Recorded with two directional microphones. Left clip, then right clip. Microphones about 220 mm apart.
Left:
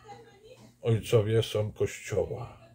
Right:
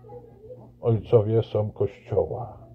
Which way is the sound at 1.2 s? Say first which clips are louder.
Right 4 dB; 10° left (ahead or behind).